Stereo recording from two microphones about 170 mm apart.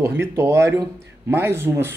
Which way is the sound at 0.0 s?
15° right (ahead or behind).